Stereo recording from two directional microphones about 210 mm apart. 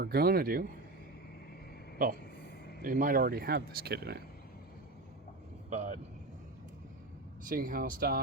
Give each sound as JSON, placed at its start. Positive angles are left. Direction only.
{"t": 0.0, "sound": "speech", "side_deg": -45}
{"t": 2.8, "sound": "speech", "side_deg": -40}
{"t": 5.7, "sound": "speech", "side_deg": -35}
{"t": 7.4, "sound": "speech", "side_deg": -40}